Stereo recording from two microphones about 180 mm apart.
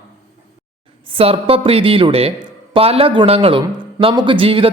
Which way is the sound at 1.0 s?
30° right (ahead or behind).